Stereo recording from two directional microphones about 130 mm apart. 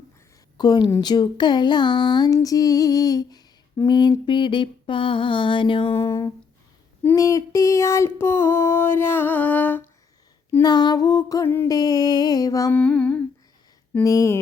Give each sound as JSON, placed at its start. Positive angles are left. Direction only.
{"t": 0.5, "sound": "speech", "side_deg": 35}
{"t": 6.0, "sound": "music", "side_deg": 25}
{"t": 7.0, "sound": "a sound", "side_deg": 20}
{"t": 10.6, "sound": "music", "side_deg": 30}
{"t": 11.7, "sound": "music", "side_deg": 30}
{"t": 12.7, "sound": "a sound", "side_deg": 10}
{"t": 14.0, "sound": "music", "side_deg": 25}